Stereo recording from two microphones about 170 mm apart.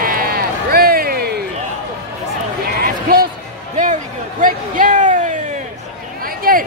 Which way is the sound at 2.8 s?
60° right (ahead or behind).